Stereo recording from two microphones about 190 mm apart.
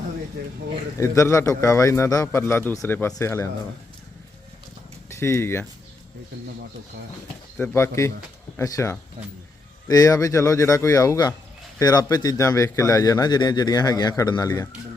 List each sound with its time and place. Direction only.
0.9 s a man's voice: 15° left (ahead or behind)
5.0 s speech: 15° left (ahead or behind)
7.6 s a man's voice: 10° left (ahead or behind)